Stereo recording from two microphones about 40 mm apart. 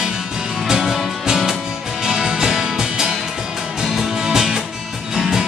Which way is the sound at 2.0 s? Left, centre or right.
Centre.